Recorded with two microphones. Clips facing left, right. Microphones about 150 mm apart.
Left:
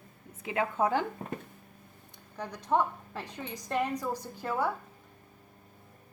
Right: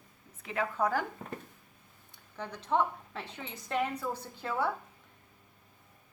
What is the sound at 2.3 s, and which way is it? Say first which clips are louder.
A woman's voice: left 2 dB; 10° left (ahead or behind).